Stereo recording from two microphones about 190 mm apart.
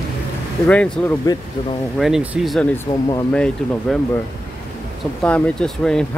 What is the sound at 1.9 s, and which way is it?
Speech, centre (ahead or behind).